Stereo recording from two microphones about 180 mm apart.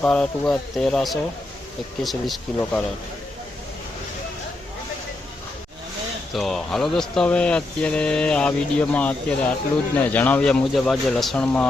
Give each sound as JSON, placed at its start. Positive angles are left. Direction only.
{"t": 0.0, "sound": "speech", "side_deg": 5}
{"t": 6.3, "sound": "speech", "side_deg": 0}